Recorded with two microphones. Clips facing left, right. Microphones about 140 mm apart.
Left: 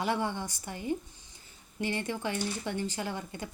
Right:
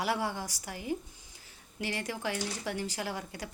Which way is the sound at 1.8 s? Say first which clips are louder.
Left 3 dB; 90° right.